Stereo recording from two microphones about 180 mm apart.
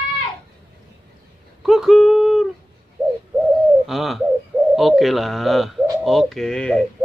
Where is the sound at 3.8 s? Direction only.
Centre (ahead or behind).